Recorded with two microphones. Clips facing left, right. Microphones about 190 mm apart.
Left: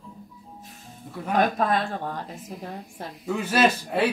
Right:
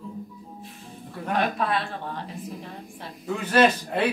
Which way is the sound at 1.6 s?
45° left (ahead or behind).